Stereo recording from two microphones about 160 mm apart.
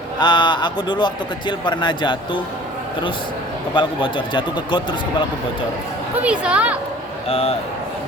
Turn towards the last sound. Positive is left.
turn(degrees=40)  # may be behind; listen again after turning